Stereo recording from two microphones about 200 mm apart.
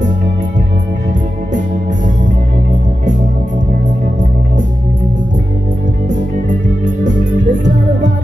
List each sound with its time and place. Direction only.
7.4 s music: 40° right (ahead or behind)